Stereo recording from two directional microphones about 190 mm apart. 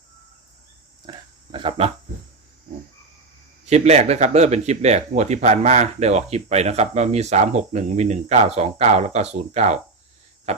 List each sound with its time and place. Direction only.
1.1 s a sound: 25° right (ahead or behind)
1.5 s speech: 25° right (ahead or behind)
3.7 s speech: 35° right (ahead or behind)